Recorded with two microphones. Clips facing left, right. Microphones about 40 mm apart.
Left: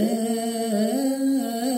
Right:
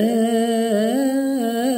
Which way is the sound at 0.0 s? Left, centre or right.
Right.